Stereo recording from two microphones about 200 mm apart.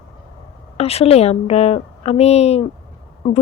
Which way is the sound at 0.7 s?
30° left (ahead or behind).